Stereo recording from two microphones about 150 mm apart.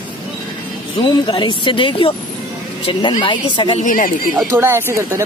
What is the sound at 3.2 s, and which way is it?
Speech, 30° left (ahead or behind).